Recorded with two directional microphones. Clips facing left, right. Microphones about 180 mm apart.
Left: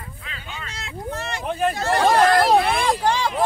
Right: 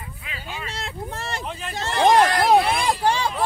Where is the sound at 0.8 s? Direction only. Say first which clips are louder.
Left 2 dB; 30° right (ahead or behind).